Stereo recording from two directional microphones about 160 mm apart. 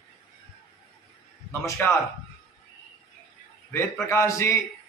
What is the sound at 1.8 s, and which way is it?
Speech, 15° left (ahead or behind).